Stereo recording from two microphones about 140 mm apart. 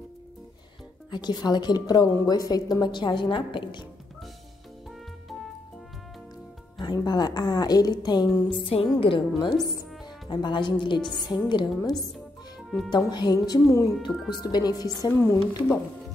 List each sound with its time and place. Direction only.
1.1 s a woman's voice: 30° left (ahead or behind)
6.8 s a woman's voice: 30° left (ahead or behind)
8.6 s a woman's voice: 40° left (ahead or behind); by 15.8 s 15° left (ahead or behind)